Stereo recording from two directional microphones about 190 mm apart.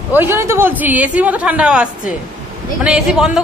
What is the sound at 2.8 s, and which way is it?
Speech, 5° right (ahead or behind).